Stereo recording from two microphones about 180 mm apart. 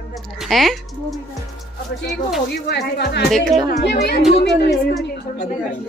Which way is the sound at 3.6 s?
65° left (ahead or behind).